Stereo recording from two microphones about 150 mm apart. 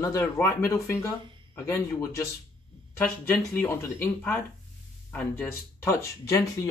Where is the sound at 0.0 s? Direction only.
20° left (ahead or behind).